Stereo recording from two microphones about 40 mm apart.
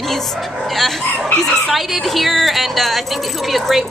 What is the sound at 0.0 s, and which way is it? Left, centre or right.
A woman's voice, centre.